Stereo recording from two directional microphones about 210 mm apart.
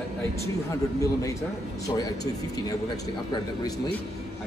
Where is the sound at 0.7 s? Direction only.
15° left (ahead or behind).